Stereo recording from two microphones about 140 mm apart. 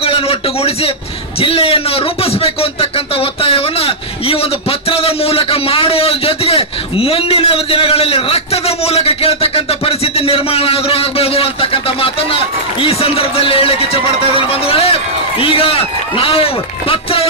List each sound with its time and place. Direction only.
0.0 s a man's voice: 45° left (ahead or behind)